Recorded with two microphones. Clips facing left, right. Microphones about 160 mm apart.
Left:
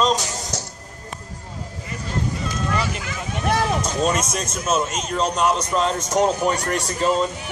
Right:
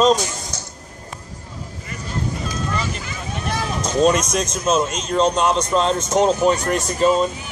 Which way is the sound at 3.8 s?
5° left (ahead or behind).